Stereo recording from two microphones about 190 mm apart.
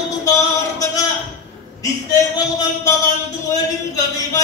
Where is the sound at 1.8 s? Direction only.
20° left (ahead or behind).